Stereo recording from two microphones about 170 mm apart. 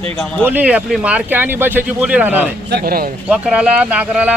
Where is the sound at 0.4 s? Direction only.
10° right (ahead or behind).